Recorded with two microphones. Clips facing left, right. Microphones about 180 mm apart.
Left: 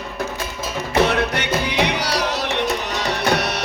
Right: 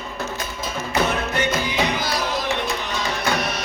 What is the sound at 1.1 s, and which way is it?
Music, 75° left (ahead or behind).